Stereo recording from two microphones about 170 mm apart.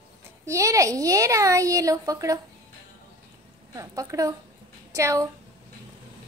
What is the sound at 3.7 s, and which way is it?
Speech, 20° right (ahead or behind).